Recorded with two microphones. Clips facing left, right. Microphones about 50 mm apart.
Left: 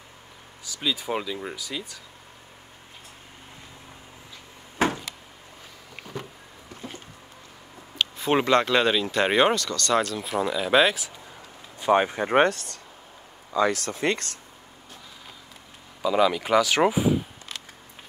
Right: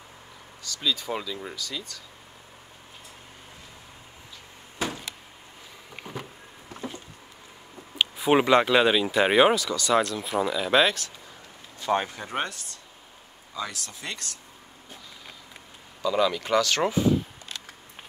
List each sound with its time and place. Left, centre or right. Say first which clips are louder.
0.7 s speech: left 1 dB; centre
4.7 s a sound: left 7 dB; left
8.0 s speech: right 2 dB; centre
11.8 s speech: left 5 dB; left
16.0 s speech: left 3 dB; centre